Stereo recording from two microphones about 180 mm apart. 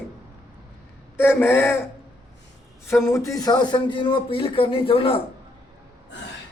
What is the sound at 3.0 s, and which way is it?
Speech, 15° left (ahead or behind).